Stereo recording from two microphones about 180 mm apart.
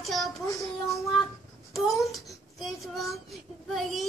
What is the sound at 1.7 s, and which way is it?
Child singing, centre (ahead or behind).